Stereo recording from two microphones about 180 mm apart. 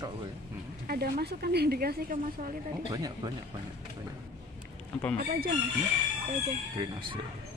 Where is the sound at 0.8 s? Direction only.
55° right (ahead or behind).